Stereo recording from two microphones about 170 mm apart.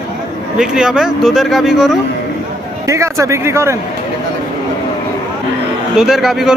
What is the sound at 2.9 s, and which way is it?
Speech, 15° right (ahead or behind).